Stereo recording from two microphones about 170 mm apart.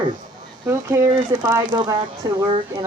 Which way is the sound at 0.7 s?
15° right (ahead or behind).